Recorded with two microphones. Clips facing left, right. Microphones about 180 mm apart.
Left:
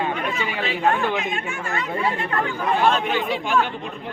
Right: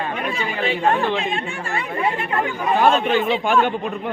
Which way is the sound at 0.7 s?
30° right (ahead or behind).